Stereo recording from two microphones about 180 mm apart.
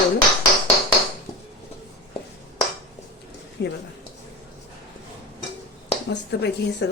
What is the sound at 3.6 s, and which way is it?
Speech, 70° left (ahead or behind).